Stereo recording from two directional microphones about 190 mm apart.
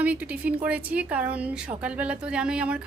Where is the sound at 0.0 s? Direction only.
10° right (ahead or behind).